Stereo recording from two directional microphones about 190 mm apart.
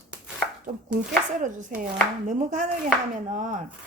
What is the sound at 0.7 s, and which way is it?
Speech, 45° right (ahead or behind).